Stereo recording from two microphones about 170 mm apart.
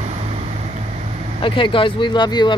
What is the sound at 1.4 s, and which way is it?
Speech, 30° left (ahead or behind).